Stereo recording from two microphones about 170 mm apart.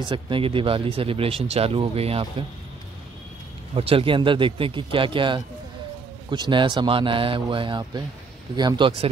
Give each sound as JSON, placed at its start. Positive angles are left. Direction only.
{"t": 0.0, "sound": "speech", "side_deg": -30}
{"t": 3.7, "sound": "speech", "side_deg": -35}